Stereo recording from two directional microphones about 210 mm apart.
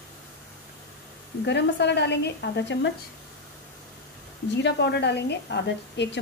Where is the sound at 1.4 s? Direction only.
55° left (ahead or behind).